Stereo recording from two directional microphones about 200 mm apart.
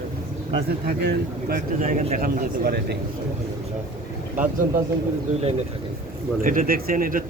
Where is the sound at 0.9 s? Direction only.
50° right (ahead or behind).